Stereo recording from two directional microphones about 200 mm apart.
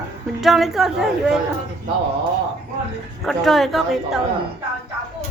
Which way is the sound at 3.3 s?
Centre (ahead or behind).